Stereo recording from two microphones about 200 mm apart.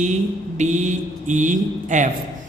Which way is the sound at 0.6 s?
35° right (ahead or behind).